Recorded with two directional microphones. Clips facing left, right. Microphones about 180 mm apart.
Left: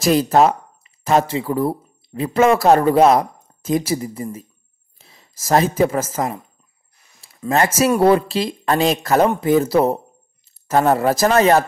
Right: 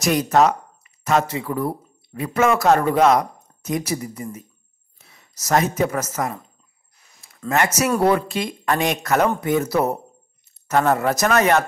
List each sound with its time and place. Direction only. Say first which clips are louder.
0.0 s speech: left 3 dB; 30° left (ahead or behind)
7.4 s speech: left 4 dB; 30° left (ahead or behind)